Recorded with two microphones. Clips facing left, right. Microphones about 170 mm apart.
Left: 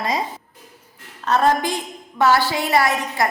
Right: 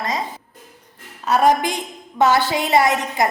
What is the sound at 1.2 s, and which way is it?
A woman's voice, 10° right (ahead or behind).